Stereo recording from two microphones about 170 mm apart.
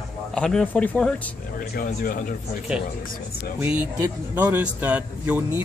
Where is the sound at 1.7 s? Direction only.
55° left (ahead or behind).